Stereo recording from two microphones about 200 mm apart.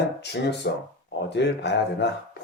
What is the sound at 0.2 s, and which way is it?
Speech, 55° left (ahead or behind).